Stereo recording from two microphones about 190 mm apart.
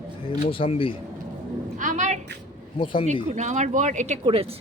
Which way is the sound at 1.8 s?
40° right (ahead or behind).